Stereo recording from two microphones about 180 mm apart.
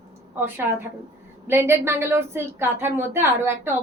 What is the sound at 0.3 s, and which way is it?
A woman's voice, 10° right (ahead or behind).